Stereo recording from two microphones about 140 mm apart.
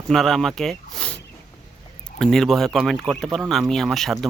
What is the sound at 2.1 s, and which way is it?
Speech, 5° left (ahead or behind).